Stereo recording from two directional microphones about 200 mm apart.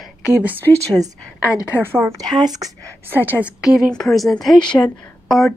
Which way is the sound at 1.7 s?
10° right (ahead or behind).